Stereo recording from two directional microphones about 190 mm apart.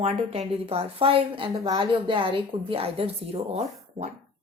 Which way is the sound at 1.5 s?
20° right (ahead or behind).